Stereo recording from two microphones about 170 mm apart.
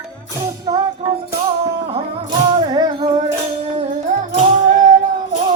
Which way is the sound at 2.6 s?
25° right (ahead or behind).